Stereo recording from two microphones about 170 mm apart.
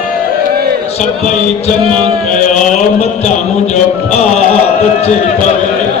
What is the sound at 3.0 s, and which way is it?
Music, 40° left (ahead or behind).